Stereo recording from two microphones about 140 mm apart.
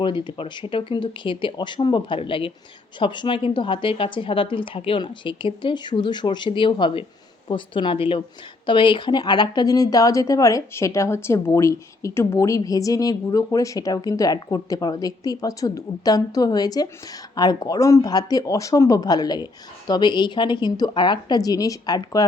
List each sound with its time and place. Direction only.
0.0 s speech: 35° left (ahead or behind)